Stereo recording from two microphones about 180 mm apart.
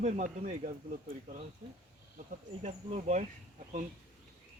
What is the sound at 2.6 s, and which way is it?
Speech, 35° right (ahead or behind).